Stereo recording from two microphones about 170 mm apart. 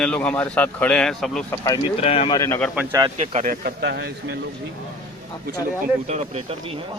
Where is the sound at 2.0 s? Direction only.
35° left (ahead or behind).